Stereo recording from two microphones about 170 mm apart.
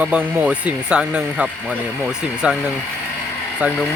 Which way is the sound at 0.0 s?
5° right (ahead or behind).